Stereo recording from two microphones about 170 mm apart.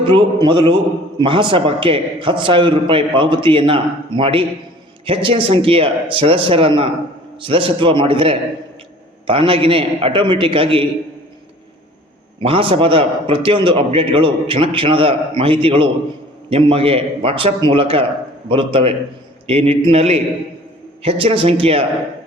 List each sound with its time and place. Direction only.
0.0 s a man's voice: 30° right (ahead or behind)
12.4 s a man's voice: 30° right (ahead or behind)